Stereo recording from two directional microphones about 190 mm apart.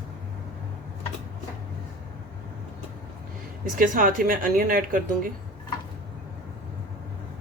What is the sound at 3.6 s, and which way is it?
Speech, 45° right (ahead or behind).